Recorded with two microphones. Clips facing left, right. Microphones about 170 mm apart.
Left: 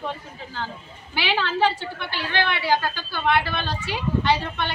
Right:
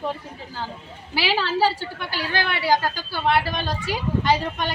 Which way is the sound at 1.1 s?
35° right (ahead or behind).